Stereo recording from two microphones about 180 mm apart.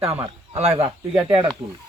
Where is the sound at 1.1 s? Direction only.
25° right (ahead or behind).